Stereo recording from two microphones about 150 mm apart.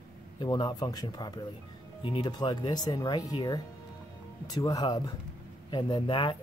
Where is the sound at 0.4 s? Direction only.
25° left (ahead or behind).